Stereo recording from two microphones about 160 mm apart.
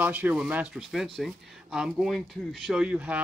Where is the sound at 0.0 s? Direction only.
10° right (ahead or behind).